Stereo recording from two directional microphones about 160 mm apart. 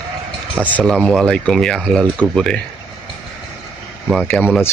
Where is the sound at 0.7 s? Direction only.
5° left (ahead or behind).